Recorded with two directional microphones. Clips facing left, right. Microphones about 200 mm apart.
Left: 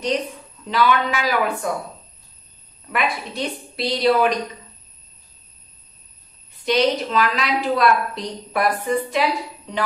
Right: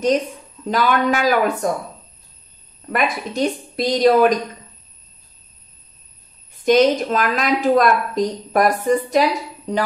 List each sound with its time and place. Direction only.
0.7 s a woman's voice: 45° right (ahead or behind)
2.9 s a woman's voice: 45° right (ahead or behind)
6.6 s a woman's voice: 45° right (ahead or behind)